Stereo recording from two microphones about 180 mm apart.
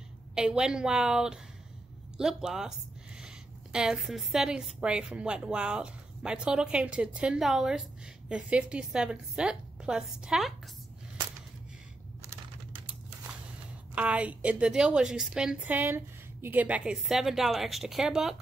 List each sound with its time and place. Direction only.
0.3 s a woman's voice: 5° right (ahead or behind)
3.7 s a woman's voice: 5° right (ahead or behind)
13.9 s a woman's voice: 5° right (ahead or behind)